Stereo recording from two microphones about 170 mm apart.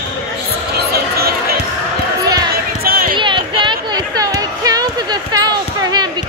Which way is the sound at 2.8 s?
60° right (ahead or behind).